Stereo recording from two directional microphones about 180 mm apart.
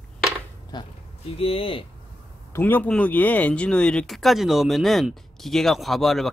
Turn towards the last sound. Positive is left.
turn(degrees=0)  # may be behind; listen again after turning